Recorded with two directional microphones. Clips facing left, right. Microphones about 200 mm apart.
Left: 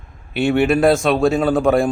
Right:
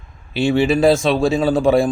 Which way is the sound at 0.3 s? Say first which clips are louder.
Even; 60° left (ahead or behind).